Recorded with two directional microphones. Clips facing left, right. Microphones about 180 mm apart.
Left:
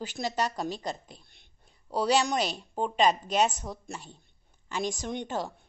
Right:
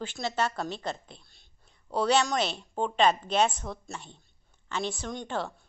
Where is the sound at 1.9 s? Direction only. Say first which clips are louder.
Even; 10° left (ahead or behind).